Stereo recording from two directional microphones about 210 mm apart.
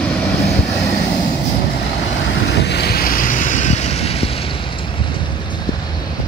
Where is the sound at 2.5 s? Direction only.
55° left (ahead or behind); by 4.3 s 30° left (ahead or behind).